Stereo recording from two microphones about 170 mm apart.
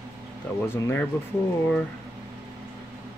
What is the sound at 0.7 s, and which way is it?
Speech, 10° left (ahead or behind).